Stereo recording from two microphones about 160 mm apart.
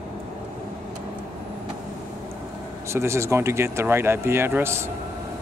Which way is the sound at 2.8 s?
15° right (ahead or behind).